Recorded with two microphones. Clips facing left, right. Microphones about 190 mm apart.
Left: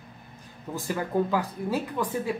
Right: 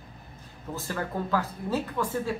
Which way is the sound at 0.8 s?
15° left (ahead or behind).